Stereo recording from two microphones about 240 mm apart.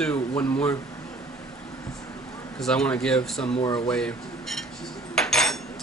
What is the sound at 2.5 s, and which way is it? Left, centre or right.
Speech, centre.